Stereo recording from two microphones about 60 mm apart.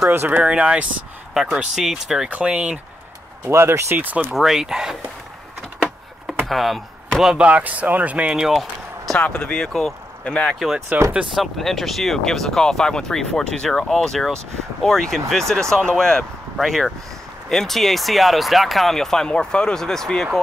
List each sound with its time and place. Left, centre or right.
0.1 s speech: right
0.4 s speech: centre
2.2 s speech: right
3.4 s speech: right
4.0 s speech: right
4.3 s speech: centre
6.4 s speech: centre
7.3 s speech: right
8.5 s basketball bounce: centre
9.3 s speech: centre
10.2 s speech: centre
10.9 s speech: right
11.3 s speech: centre